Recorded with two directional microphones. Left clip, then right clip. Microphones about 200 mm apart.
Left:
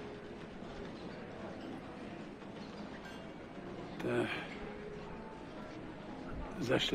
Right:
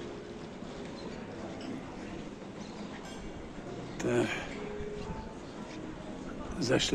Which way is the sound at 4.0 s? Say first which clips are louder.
Right 5 dB; 10° right (ahead or behind).